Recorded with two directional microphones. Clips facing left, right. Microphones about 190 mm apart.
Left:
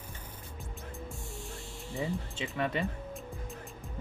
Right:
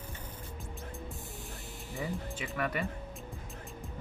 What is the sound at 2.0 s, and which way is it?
Speech, 20° left (ahead or behind).